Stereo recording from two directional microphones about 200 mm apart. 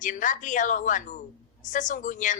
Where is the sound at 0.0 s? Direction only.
40° left (ahead or behind).